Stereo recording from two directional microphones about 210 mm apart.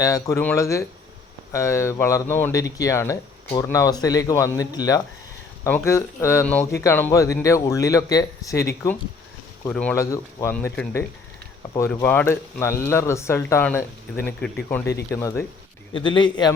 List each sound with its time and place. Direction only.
0.0 s speech: 15° left (ahead or behind)
9.6 s speech: 10° left (ahead or behind)
15.9 s a man's voice: 25° left (ahead or behind)